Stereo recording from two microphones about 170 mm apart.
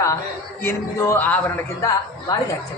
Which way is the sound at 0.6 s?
15° left (ahead or behind).